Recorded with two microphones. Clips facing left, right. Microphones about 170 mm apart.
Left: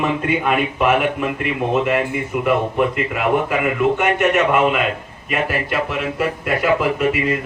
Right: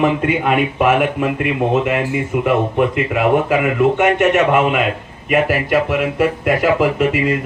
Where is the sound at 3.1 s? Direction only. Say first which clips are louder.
Right 4 dB; 45° right (ahead or behind).